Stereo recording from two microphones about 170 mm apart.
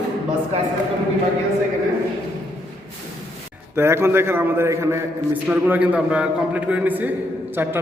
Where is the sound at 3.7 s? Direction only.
15° right (ahead or behind).